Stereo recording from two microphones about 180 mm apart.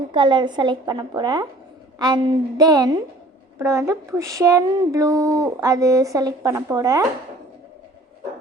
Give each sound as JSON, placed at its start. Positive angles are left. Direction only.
{"t": 0.1, "sound": "speech", "side_deg": -25}